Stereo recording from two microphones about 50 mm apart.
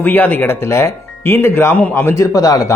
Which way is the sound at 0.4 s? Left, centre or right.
Left.